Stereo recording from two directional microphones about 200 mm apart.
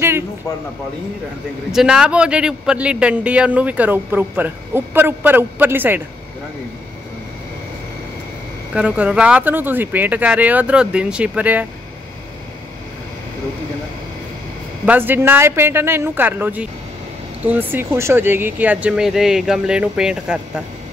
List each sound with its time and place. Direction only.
1.7 s a man's voice: 5° right (ahead or behind)
8.7 s a man's voice: 5° right (ahead or behind)
14.9 s a man's voice: 10° right (ahead or behind)